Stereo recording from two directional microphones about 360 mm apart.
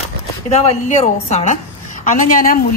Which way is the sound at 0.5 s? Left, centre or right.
Centre.